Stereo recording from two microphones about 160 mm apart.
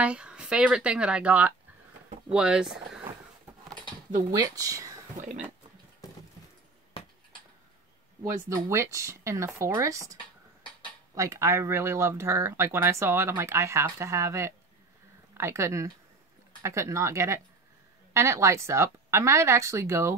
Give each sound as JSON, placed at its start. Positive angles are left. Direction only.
{"t": 0.0, "sound": "speech", "side_deg": -5}
{"t": 4.3, "sound": "speech", "side_deg": -20}
{"t": 8.2, "sound": "speech", "side_deg": -20}
{"t": 11.1, "sound": "speech", "side_deg": -20}